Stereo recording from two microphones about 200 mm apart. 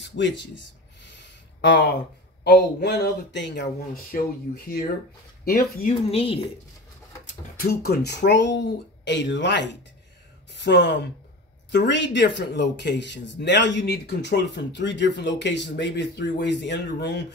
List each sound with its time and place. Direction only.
0.0 s speech: 65° left (ahead or behind)
1.0 s a sound: 65° left (ahead or behind)
2.4 s speech: 55° left (ahead or behind)
6.0 s speech: 30° left (ahead or behind)
7.8 s speech: 55° left (ahead or behind)